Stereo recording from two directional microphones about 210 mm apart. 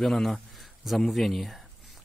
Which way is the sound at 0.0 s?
Centre (ahead or behind).